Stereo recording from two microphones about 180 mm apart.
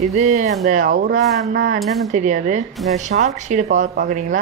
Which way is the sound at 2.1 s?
45° right (ahead or behind).